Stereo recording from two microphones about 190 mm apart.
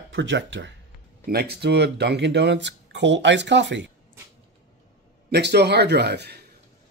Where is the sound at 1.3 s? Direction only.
55° right (ahead or behind).